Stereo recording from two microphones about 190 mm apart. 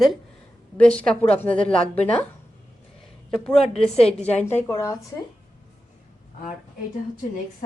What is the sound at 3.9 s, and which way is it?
Speech, 30° left (ahead or behind).